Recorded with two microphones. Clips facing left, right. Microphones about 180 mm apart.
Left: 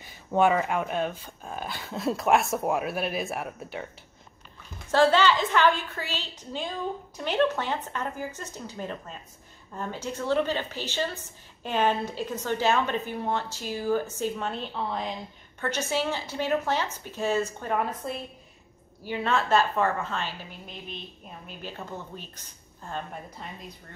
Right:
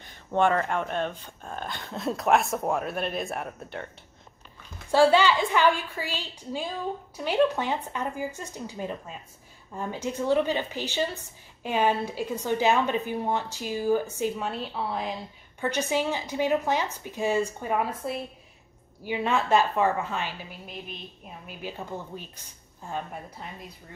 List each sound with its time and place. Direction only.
0.0 s speech: 5° left (ahead or behind)
4.9 s a woman's voice: 10° right (ahead or behind)